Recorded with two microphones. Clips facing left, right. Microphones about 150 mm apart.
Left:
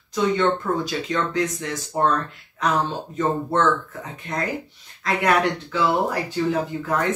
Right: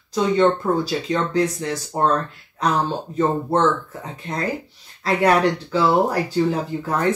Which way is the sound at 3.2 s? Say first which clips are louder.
Right 2 dB; 30° right (ahead or behind).